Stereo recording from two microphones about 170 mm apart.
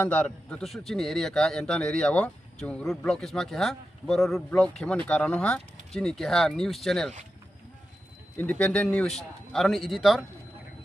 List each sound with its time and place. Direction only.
0.0 s a man's voice: 10° left (ahead or behind)
8.4 s a man's voice: 10° left (ahead or behind)